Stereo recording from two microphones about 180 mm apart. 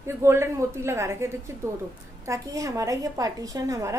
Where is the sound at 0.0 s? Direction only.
15° right (ahead or behind).